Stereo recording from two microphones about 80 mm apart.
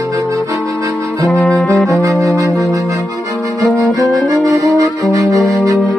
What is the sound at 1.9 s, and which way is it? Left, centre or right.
Music, right.